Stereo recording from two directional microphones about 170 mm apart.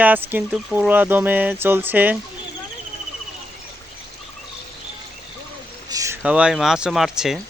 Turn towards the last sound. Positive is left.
turn(degrees=0)  # may be behind; listen again after turning